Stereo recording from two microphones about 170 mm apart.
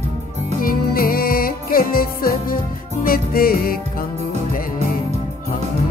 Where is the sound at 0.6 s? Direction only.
55° left (ahead or behind).